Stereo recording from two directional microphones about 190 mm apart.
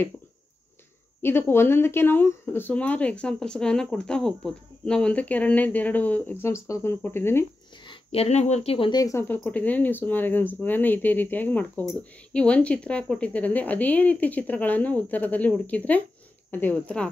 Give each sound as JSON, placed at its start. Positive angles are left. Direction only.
{"t": 1.2, "sound": "speech", "side_deg": 10}
{"t": 7.8, "sound": "speech", "side_deg": 30}